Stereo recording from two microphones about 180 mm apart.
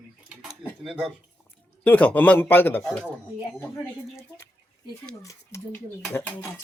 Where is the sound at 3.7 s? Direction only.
15° left (ahead or behind).